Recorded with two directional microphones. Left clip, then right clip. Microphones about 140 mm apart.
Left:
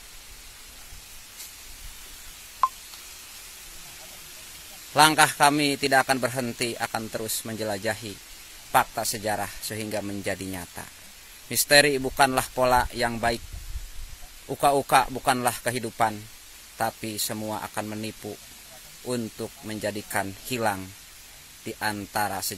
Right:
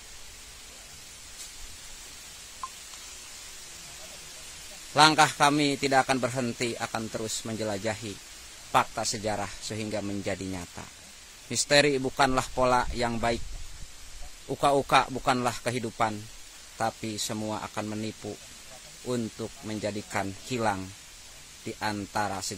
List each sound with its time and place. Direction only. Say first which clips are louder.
4.9 s a man's voice: left 2 dB; centre (ahead or behind)
14.5 s a man's voice: left 2 dB; centre (ahead or behind)